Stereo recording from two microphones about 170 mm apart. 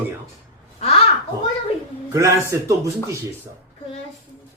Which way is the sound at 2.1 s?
15° right (ahead or behind).